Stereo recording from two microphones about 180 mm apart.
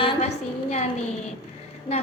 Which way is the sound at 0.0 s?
35° left (ahead or behind).